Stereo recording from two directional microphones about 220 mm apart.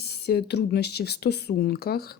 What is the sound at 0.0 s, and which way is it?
Speech, 45° left (ahead or behind).